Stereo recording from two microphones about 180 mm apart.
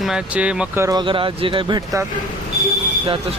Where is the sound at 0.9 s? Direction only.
25° right (ahead or behind).